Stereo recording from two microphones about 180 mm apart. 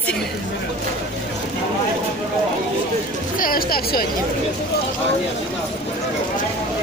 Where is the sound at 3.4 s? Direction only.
55° left (ahead or behind).